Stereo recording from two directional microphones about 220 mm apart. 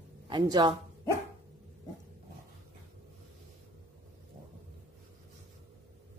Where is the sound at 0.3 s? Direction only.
20° right (ahead or behind).